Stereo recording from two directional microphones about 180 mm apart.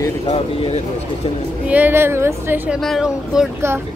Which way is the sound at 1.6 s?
10° right (ahead or behind).